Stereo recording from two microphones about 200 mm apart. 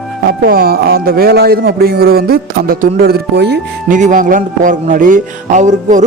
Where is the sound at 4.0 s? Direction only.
40° right (ahead or behind).